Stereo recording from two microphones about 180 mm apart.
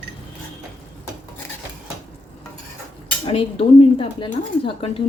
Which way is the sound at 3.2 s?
30° left (ahead or behind).